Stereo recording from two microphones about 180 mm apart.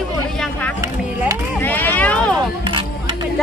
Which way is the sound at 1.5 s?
10° left (ahead or behind).